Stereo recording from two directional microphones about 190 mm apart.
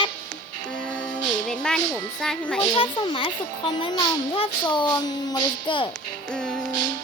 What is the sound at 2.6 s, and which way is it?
A child's voice, 25° left (ahead or behind).